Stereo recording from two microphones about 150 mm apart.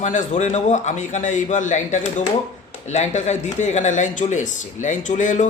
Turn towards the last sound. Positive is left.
turn(degrees=55)  # may be behind; listen again after turning